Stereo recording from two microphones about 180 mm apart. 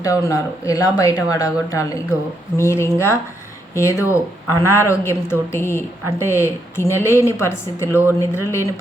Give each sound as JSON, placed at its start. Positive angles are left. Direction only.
{"t": 0.0, "sound": "speech", "side_deg": 20}